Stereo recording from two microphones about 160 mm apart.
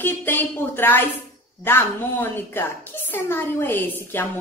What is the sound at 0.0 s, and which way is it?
Speech, 15° left (ahead or behind).